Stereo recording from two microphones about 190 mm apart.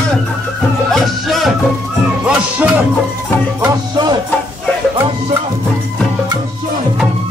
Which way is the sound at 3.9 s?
20° right (ahead or behind).